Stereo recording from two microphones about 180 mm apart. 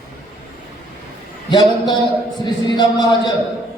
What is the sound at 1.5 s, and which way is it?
A man's voice, 25° left (ahead or behind).